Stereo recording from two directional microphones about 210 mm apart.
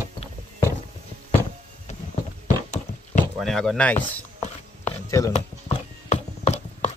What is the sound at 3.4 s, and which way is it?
Speech, centre (ahead or behind).